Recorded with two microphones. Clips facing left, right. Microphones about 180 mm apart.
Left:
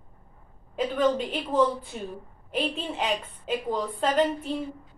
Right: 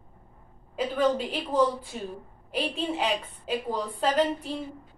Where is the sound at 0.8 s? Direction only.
5° right (ahead or behind).